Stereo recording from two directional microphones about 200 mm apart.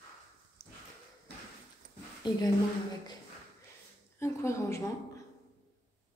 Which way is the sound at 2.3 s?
20° left (ahead or behind).